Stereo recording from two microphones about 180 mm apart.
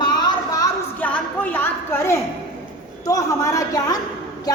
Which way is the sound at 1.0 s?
10° left (ahead or behind).